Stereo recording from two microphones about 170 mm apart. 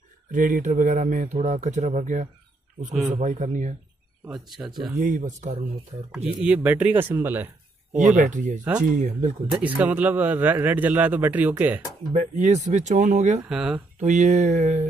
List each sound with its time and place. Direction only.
0.3 s a man's voice: 50° right (ahead or behind)
4.5 s speech: centre (ahead or behind)
4.9 s a man's voice: 50° right (ahead or behind)
6.4 s a man's voice: 10° right (ahead or behind)
8.2 s a man's voice: 45° right (ahead or behind)
9.6 s a man's voice: 10° right (ahead or behind)
12.1 s a man's voice: 45° right (ahead or behind)
13.5 s speech: 5° right (ahead or behind)
13.9 s a man's voice: 45° right (ahead or behind)